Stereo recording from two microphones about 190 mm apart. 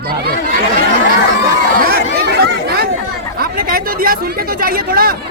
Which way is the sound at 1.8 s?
55° right (ahead or behind).